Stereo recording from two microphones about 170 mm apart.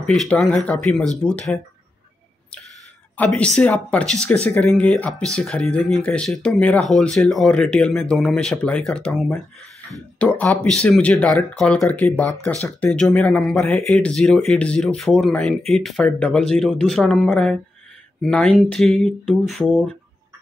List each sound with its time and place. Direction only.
0.0 s speech: 5° left (ahead or behind)
3.2 s speech: 5° left (ahead or behind)
18.7 s speech: centre (ahead or behind)